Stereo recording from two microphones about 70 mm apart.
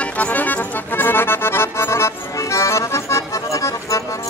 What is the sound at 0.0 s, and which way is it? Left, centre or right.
Accordion, centre.